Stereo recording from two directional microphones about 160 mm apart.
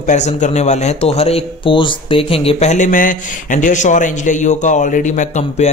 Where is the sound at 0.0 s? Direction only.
45° left (ahead or behind).